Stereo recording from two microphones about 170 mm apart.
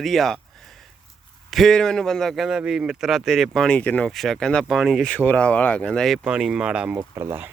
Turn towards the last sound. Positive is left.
turn(degrees=-15)  # may be behind; listen again after turning